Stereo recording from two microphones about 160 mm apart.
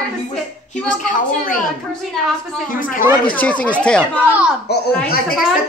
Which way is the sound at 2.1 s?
Centre (ahead or behind).